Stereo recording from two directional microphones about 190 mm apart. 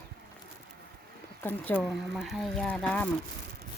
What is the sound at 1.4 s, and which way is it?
Speech, 10° left (ahead or behind).